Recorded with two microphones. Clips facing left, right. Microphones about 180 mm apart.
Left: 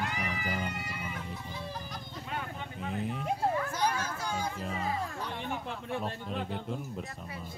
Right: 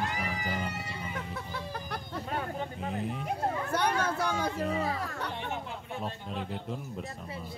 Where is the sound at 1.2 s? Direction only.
65° right (ahead or behind).